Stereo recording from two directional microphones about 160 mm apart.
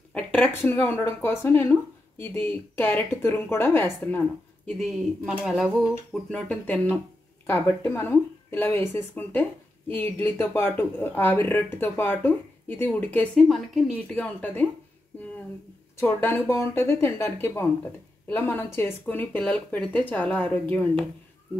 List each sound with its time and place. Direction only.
0.1 s speech: 10° left (ahead or behind)
4.6 s speech: centre (ahead or behind)
14.1 s speech: 10° left (ahead or behind)
16.0 s speech: 15° left (ahead or behind)